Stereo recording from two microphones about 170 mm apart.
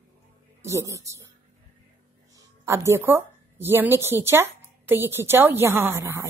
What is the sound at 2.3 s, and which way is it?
A woman's voice, 15° right (ahead or behind).